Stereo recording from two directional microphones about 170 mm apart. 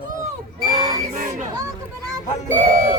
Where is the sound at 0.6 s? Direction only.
25° right (ahead or behind).